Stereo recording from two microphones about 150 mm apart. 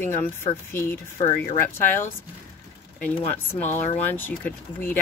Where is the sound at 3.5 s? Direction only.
15° left (ahead or behind).